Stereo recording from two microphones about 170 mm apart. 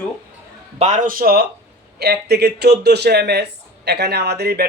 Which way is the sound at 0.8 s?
45° right (ahead or behind).